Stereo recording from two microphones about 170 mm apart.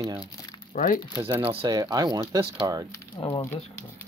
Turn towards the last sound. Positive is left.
turn(degrees=25)  # may be behind; listen again after turning